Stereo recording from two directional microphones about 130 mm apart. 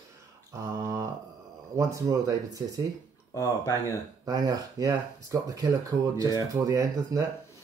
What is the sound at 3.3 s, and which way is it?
Speech, 25° left (ahead or behind).